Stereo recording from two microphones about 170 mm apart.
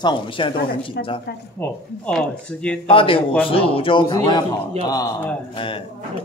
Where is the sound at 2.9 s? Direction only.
30° left (ahead or behind).